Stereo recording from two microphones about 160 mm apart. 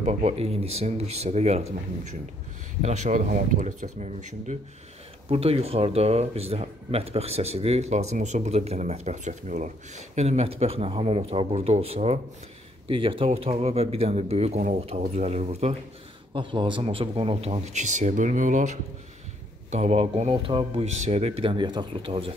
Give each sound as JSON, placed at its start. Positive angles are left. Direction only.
{"t": 0.0, "sound": "speech", "side_deg": -40}
{"t": 2.8, "sound": "speech", "side_deg": -45}
{"t": 5.3, "sound": "speech", "side_deg": -40}